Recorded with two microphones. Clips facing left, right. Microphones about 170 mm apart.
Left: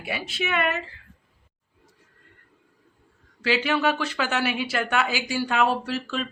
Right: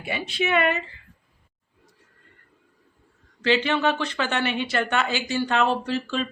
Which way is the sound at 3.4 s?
5° left (ahead or behind).